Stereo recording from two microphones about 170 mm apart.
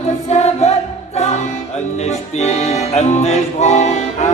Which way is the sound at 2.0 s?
40° left (ahead or behind).